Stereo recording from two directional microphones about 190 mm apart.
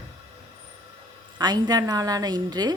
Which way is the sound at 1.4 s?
20° right (ahead or behind).